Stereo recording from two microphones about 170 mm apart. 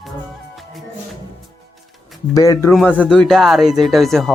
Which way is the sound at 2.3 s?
20° left (ahead or behind).